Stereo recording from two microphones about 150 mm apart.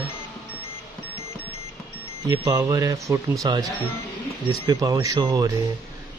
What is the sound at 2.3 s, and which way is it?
Speech, 25° right (ahead or behind).